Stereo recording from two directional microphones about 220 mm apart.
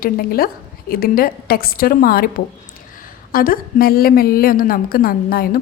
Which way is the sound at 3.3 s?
40° left (ahead or behind).